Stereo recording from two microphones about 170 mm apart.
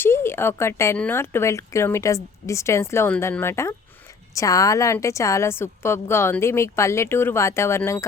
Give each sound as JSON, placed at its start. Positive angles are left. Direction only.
{"t": 0.0, "sound": "speech", "side_deg": 15}